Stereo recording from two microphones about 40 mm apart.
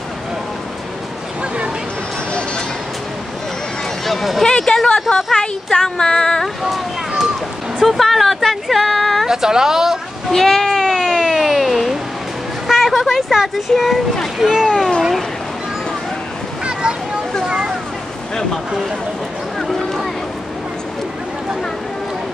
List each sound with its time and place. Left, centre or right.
4.0 s speech: centre
4.5 s speech: left
7.8 s speech: centre
9.3 s speech: centre
10.3 s speech: centre
11.0 s a sound: centre
14.4 s speech: centre
16.6 s a sound: right
19.6 s a sound: centre